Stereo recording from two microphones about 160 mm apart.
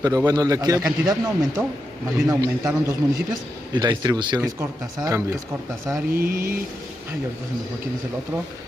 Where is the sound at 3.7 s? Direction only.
25° right (ahead or behind).